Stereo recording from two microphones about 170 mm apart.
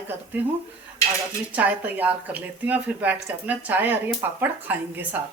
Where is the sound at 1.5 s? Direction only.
10° right (ahead or behind).